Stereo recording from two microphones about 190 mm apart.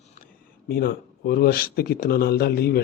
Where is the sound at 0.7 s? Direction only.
50° left (ahead or behind).